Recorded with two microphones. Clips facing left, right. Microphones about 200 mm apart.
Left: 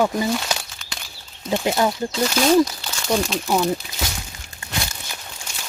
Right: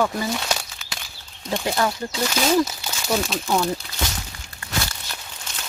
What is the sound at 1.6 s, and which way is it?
Speech, 20° left (ahead or behind).